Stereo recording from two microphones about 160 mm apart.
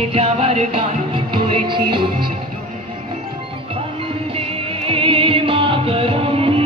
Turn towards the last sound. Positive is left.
turn(degrees=-35)  # may be behind; listen again after turning